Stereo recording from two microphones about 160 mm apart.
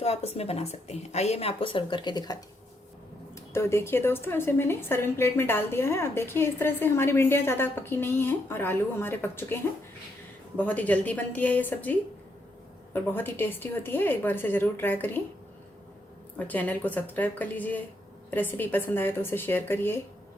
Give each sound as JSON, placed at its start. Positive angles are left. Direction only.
{"t": 0.0, "sound": "a woman's voice", "side_deg": 40}
{"t": 10.6, "sound": "speech", "side_deg": 10}
{"t": 16.4, "sound": "speech", "side_deg": 10}